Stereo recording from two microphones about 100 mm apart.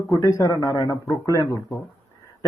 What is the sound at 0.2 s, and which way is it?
Speech, 35° left (ahead or behind).